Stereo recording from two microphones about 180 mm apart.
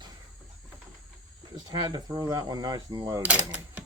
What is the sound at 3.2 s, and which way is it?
Speech, 5° right (ahead or behind).